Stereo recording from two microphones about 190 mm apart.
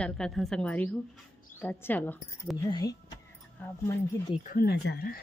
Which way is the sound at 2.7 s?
20° left (ahead or behind).